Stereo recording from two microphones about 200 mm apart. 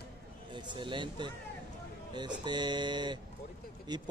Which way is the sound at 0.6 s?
25° right (ahead or behind).